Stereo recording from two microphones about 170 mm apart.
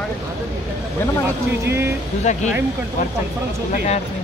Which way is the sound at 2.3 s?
45° left (ahead or behind).